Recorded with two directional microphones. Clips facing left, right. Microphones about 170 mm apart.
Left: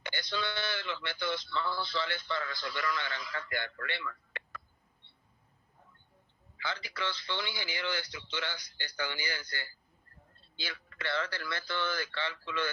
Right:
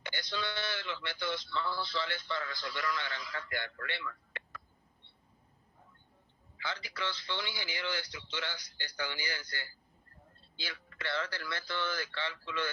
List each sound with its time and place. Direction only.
0.0 s speech: 65° left (ahead or behind)
6.6 s speech: 65° left (ahead or behind)